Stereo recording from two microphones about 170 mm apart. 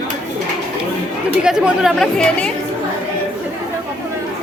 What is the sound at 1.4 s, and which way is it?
Speech, 5° right (ahead or behind).